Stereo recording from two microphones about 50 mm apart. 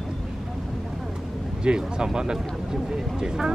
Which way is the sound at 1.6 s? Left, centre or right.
Centre.